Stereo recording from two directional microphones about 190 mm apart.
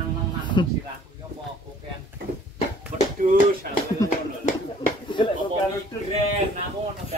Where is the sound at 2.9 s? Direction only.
40° right (ahead or behind).